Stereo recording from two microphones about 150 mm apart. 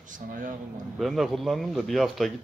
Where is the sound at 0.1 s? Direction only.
60° right (ahead or behind).